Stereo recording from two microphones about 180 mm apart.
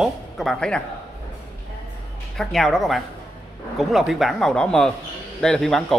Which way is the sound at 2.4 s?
Centre (ahead or behind).